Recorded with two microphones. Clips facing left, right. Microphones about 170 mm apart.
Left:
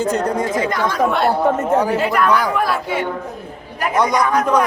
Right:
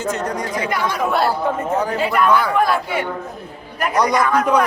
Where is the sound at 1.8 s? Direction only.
5° left (ahead or behind).